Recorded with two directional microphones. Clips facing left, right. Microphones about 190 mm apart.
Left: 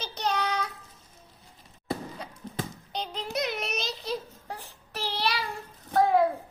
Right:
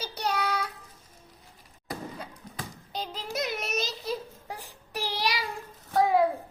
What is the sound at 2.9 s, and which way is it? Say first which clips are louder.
Music: left 1 dB; centre (ahead or behind).